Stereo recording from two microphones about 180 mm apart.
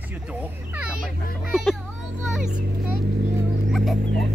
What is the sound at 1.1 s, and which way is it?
Speech, 50° left (ahead or behind).